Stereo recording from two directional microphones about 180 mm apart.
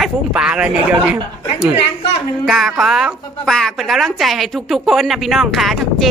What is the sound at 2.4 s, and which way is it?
A woman's voice, centre (ahead or behind).